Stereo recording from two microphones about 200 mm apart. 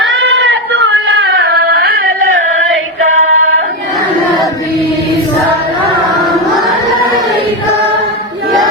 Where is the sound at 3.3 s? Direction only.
80° right.